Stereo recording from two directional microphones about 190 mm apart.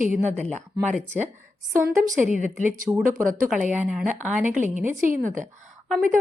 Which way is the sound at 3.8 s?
5° right (ahead or behind).